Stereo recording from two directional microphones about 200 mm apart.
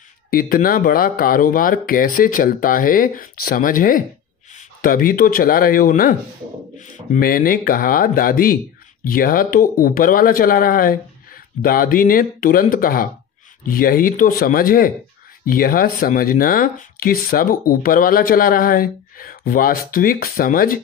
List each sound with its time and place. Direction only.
0.3 s speech: 45° left (ahead or behind)